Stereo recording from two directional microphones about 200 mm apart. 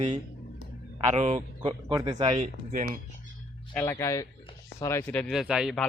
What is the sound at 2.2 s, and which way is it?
Speech, 30° right (ahead or behind).